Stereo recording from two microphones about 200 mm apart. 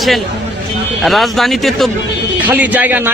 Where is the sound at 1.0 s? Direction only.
Centre (ahead or behind).